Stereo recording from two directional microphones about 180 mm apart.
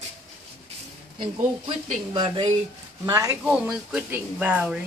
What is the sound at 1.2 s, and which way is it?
Speech, 30° right (ahead or behind).